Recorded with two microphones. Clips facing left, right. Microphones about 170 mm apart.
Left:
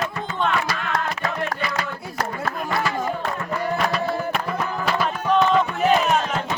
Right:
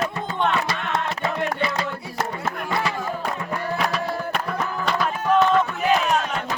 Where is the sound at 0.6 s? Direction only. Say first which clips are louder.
Even; 25° right (ahead or behind).